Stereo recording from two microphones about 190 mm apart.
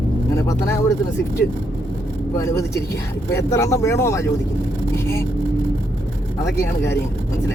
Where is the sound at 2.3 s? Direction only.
15° left (ahead or behind).